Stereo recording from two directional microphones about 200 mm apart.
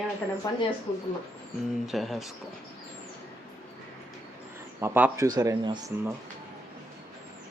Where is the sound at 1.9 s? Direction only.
Centre (ahead or behind).